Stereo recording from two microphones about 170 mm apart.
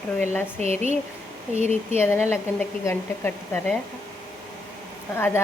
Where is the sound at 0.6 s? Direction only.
40° right (ahead or behind).